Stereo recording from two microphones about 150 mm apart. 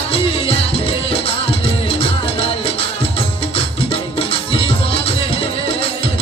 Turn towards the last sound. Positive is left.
turn(degrees=40)  # may be behind; listen again after turning